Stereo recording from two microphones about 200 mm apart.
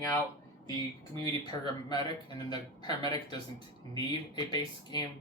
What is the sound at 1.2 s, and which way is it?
Speech, 20° left (ahead or behind).